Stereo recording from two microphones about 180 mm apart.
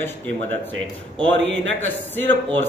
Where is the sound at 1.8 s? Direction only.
10° left (ahead or behind).